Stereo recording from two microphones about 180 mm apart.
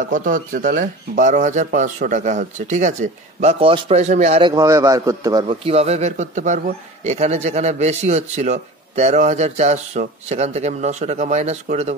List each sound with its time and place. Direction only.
0.1 s speech: 50° right (ahead or behind)
4.4 s a man's voice: 20° right (ahead or behind); by 11.9 s 35° right (ahead or behind)